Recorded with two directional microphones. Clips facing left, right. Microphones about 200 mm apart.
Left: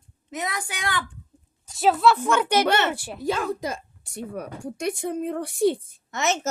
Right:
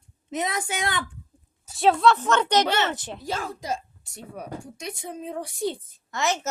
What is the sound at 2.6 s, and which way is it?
Speech, 55° left (ahead or behind).